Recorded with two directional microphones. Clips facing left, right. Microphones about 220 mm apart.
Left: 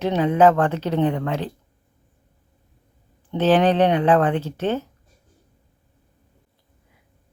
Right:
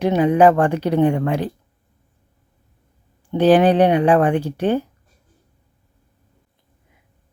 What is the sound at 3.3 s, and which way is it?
Speech, 15° right (ahead or behind).